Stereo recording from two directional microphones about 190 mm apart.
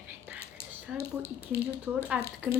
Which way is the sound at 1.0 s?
10° left (ahead or behind).